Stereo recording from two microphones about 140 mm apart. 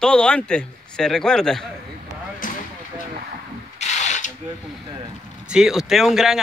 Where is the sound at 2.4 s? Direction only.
80° left.